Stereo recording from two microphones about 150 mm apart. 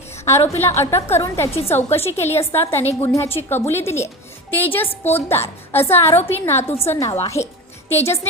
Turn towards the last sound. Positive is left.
turn(degrees=20)  # may be behind; listen again after turning